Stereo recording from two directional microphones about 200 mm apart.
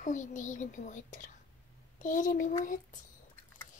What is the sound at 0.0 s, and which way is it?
A child's voice, 40° left (ahead or behind).